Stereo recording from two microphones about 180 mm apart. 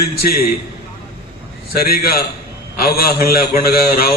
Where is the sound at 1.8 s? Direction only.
55° left (ahead or behind).